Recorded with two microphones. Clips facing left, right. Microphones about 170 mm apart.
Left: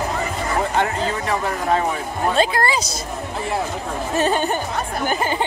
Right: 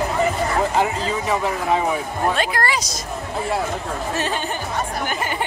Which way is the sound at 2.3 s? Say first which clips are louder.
Left 3 dB; 25° left (ahead or behind).